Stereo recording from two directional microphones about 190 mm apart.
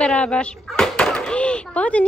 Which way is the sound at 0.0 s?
5° left (ahead or behind).